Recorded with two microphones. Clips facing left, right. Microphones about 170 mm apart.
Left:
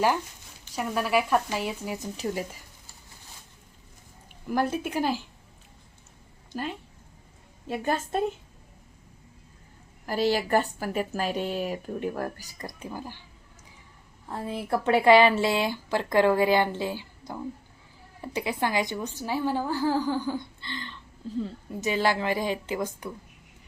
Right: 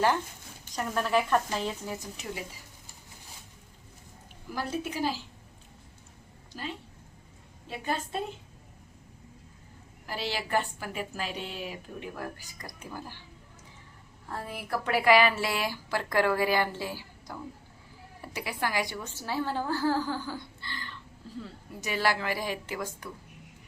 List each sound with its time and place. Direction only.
0.8 s a woman's voice: 10° left (ahead or behind)
2.2 s speech: 40° left (ahead or behind)
4.5 s a woman's voice: 55° left (ahead or behind)
6.5 s a woman's voice: 55° left (ahead or behind)
10.1 s a woman's voice: 45° left (ahead or behind)
12.5 s speech: 25° left (ahead or behind)
14.3 s a woman's voice: 20° left (ahead or behind)